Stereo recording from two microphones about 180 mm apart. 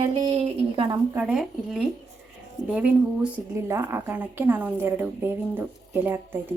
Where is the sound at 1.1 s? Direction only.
5° right (ahead or behind).